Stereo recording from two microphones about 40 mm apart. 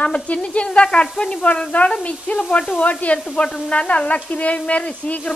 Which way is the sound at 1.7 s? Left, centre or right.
Left.